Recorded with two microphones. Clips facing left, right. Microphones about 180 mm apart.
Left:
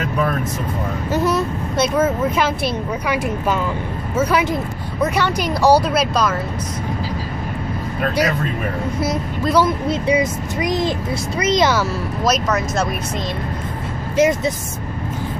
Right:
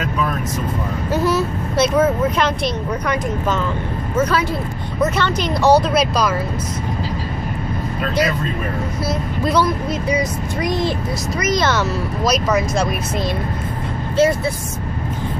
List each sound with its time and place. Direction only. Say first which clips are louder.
1.1 s speech: right 1 dB; centre (ahead or behind)
8.0 s speech: left 1 dB; 40° left (ahead or behind)
9.8 s speech: left 3 dB; 25° left (ahead or behind)
10.6 s speech: left 1 dB; 15° left (ahead or behind)
11.3 s speech: left 2 dB; 30° left (ahead or behind)
11.6 s speech: left 1 dB; 5° left (ahead or behind)
14.1 s speech: even; 20° left (ahead or behind)